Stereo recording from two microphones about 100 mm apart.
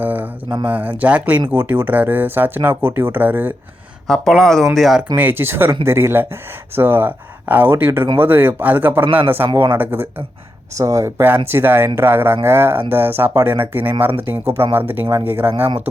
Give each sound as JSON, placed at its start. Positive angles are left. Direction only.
{"t": 0.0, "sound": "a sound", "side_deg": -15}
{"t": 0.6, "sound": "speech", "side_deg": -15}
{"t": 4.0, "sound": "speech", "side_deg": 5}
{"t": 5.1, "sound": "speech", "side_deg": -20}
{"t": 10.8, "sound": "speech", "side_deg": -30}
{"t": 15.6, "sound": "speech", "side_deg": -65}